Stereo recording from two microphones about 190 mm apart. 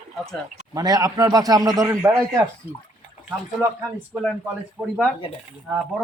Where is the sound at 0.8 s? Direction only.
20° right (ahead or behind).